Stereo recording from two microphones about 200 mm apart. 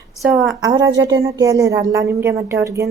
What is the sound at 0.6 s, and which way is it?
A woman's voice, 15° right (ahead or behind).